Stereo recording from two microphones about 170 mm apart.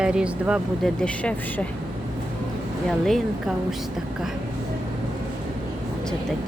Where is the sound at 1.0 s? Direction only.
5° left (ahead or behind).